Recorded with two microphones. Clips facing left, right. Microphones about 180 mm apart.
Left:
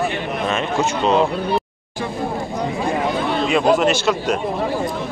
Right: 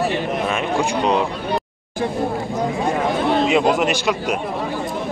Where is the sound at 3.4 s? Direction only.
20° right (ahead or behind).